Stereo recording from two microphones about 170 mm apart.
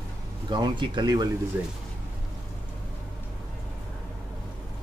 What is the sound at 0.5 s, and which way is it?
Speech, 25° right (ahead or behind).